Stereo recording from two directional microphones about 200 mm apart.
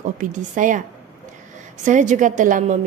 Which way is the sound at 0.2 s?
40° right (ahead or behind).